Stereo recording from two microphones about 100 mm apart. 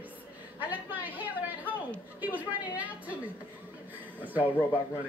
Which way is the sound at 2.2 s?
15° right (ahead or behind).